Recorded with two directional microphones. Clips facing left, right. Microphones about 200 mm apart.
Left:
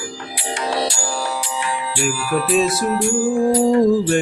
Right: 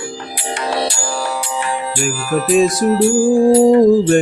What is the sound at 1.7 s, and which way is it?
Music, 45° right (ahead or behind).